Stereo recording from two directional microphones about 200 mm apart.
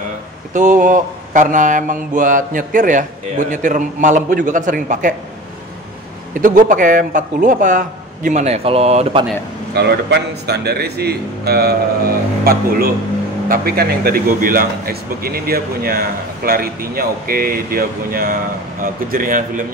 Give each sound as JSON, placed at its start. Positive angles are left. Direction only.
{"t": 0.5, "sound": "mantra", "side_deg": -40}
{"t": 6.3, "sound": "mantra", "side_deg": -40}
{"t": 9.8, "sound": "speech", "side_deg": -55}